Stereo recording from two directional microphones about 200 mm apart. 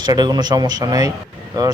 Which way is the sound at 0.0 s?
20° right (ahead or behind).